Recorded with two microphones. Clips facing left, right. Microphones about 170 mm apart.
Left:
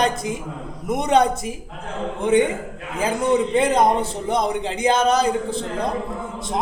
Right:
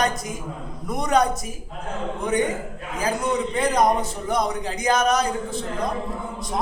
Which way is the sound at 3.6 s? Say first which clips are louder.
Left 3 dB; 25° left (ahead or behind).